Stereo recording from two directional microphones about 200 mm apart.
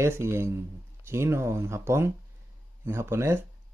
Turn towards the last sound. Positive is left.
turn(degrees=-15)  # may be behind; listen again after turning